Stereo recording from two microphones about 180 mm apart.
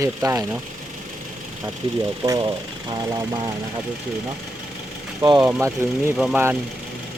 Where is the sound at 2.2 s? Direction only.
20° right (ahead or behind).